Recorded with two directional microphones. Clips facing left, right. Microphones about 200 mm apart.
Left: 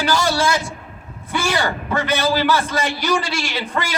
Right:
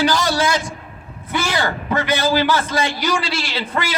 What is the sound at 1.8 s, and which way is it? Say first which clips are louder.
Speech: right 1 dB; 15° right (ahead or behind).